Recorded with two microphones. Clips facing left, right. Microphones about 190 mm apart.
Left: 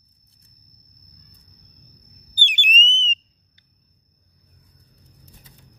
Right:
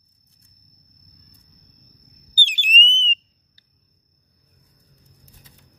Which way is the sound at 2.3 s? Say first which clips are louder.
Even; 35° right (ahead or behind).